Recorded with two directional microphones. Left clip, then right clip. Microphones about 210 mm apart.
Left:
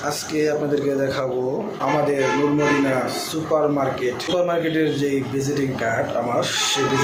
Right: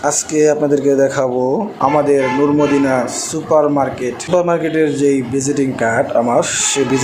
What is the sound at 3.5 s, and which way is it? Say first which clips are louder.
Speech: right 7 dB; 60° right (ahead or behind).